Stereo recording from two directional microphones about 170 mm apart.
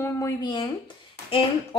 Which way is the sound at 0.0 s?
20° left (ahead or behind).